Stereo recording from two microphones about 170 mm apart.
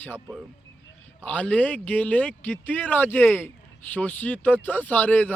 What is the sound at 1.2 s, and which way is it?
Speech, 10° left (ahead or behind).